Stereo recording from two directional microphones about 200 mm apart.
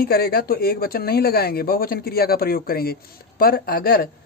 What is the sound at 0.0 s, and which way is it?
Speech, 50° left (ahead or behind).